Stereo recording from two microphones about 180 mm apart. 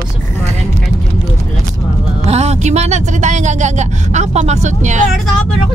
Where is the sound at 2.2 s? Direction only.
35° right (ahead or behind).